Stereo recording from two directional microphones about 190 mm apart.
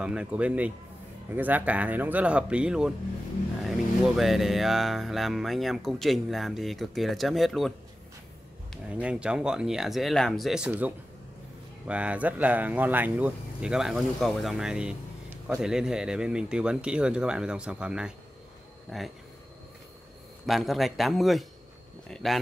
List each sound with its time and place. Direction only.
0.0 s speech: 5° right (ahead or behind)
8.8 s speech: 5° right (ahead or behind)
11.9 s speech: 5° right (ahead or behind)
20.4 s speech: centre (ahead or behind)